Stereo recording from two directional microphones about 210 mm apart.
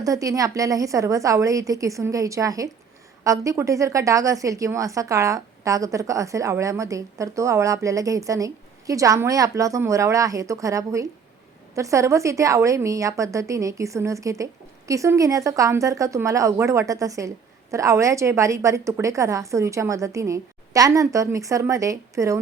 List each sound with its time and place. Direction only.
0.0 s a woman's voice: 15° right (ahead or behind)